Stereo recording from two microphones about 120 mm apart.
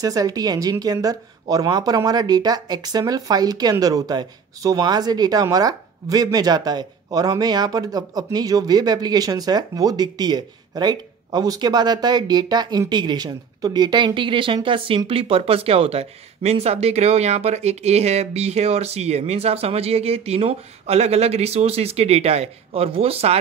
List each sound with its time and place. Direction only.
0.0 s speech: 30° right (ahead or behind); by 23.4 s 55° right (ahead or behind)